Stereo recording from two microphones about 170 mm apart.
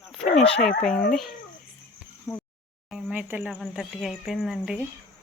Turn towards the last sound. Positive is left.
turn(degrees=0)  # may be behind; listen again after turning